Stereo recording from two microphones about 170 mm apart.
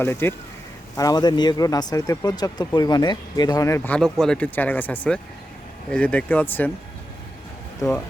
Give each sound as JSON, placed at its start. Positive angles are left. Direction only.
{"t": 0.0, "sound": "speech", "side_deg": 15}
{"t": 7.8, "sound": "speech", "side_deg": 15}